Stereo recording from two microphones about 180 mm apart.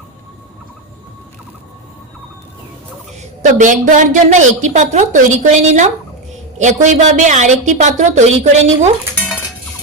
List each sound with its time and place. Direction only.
3.2 s a woman's voice: 40° right (ahead or behind)